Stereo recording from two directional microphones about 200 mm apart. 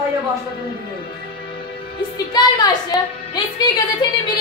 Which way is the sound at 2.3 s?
20° left (ahead or behind).